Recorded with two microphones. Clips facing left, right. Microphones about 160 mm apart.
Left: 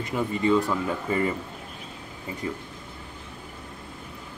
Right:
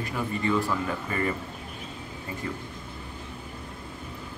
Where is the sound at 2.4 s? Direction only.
15° left (ahead or behind).